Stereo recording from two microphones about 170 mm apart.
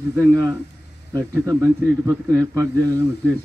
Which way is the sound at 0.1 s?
15° right (ahead or behind).